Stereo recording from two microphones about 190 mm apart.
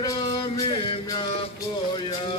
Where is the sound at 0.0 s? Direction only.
20° left (ahead or behind).